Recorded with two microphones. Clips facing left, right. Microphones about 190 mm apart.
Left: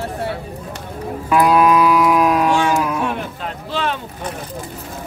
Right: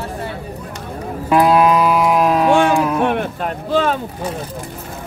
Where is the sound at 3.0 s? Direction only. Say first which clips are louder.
Right 5 dB; 55° right (ahead or behind).